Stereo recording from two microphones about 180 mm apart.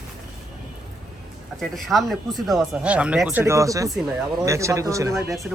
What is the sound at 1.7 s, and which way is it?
Speech, centre (ahead or behind).